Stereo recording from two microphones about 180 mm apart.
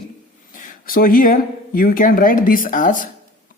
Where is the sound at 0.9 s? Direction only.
50° left (ahead or behind).